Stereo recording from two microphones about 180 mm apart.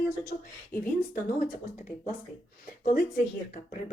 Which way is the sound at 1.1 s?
50° left (ahead or behind).